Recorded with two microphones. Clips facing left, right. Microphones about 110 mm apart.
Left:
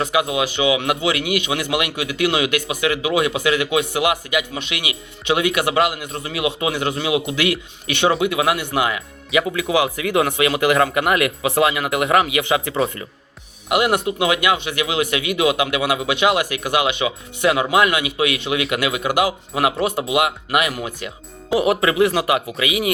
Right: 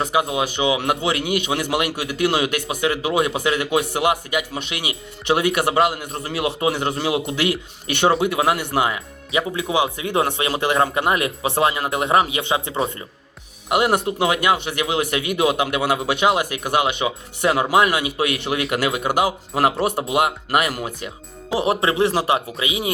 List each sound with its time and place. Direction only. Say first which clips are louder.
0.3 s a man's voice: left 2 dB; 40° right (ahead or behind)
9.5 s speech: left 2 dB; 25° right (ahead or behind)
13.7 s a man's voice: even; 40° right (ahead or behind)
21.7 s speech: left 1 dB; 30° right (ahead or behind)